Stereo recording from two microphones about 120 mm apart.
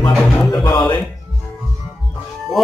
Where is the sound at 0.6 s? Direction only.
40° left (ahead or behind).